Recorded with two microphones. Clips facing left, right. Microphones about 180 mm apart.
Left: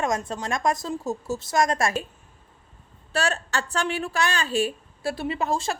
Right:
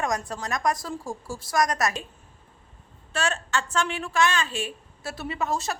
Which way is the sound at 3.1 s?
35° left (ahead or behind).